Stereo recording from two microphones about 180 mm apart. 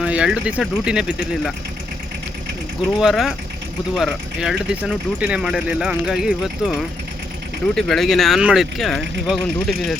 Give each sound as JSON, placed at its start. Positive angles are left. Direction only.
{"t": 0.0, "sound": "speech", "side_deg": -5}
{"t": 3.0, "sound": "speech", "side_deg": -5}
{"t": 7.8, "sound": "speech", "side_deg": 0}